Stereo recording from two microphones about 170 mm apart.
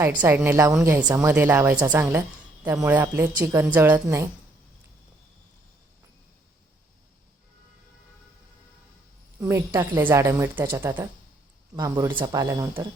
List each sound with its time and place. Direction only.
0.2 s a woman's voice: 10° right (ahead or behind)
9.4 s a woman's voice: 15° right (ahead or behind)